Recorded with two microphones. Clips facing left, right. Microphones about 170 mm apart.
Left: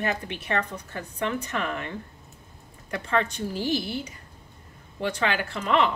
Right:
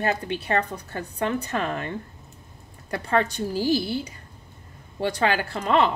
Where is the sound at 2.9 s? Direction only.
35° right (ahead or behind).